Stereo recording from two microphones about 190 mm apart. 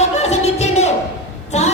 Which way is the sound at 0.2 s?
35° left (ahead or behind).